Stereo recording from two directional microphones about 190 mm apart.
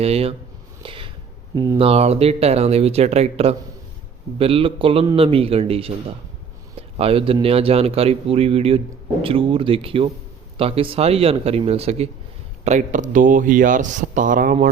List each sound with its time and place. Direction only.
0.0 s a man's voice: 30° right (ahead or behind)
0.8 s a sound: 30° right (ahead or behind)
1.5 s a man's voice: 20° right (ahead or behind)
1.8 s a man's voice: 30° right (ahead or behind)
6.9 s a man's voice: 30° right (ahead or behind); by 14.5 s 45° right (ahead or behind)